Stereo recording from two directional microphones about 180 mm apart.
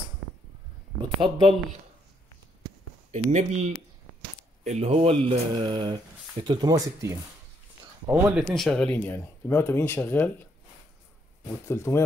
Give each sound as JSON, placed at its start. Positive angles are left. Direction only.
{"t": 1.0, "sound": "speech", "side_deg": -30}
{"t": 3.1, "sound": "speech", "side_deg": -40}
{"t": 4.6, "sound": "speech", "side_deg": -35}
{"t": 11.6, "sound": "speech", "side_deg": 15}